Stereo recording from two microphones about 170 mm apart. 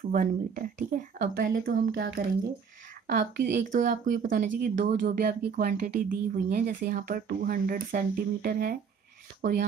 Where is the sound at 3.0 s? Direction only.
50° right (ahead or behind).